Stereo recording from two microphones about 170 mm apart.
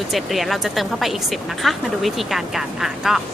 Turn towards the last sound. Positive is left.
turn(degrees=0)  # may be behind; listen again after turning